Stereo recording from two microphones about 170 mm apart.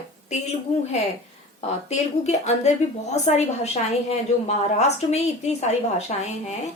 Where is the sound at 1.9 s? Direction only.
40° left (ahead or behind).